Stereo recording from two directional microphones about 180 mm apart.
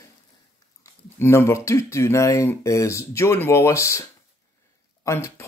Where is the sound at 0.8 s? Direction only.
15° left (ahead or behind).